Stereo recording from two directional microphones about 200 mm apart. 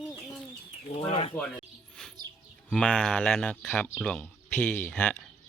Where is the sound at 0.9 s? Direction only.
30° left (ahead or behind).